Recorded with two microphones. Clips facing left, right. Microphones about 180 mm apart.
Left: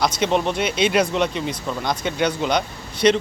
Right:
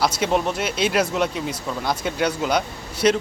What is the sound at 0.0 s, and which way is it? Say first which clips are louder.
Speech: left 1 dB; 5° right (ahead or behind).